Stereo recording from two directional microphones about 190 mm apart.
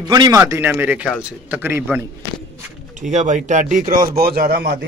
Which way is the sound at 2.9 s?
40° right (ahead or behind).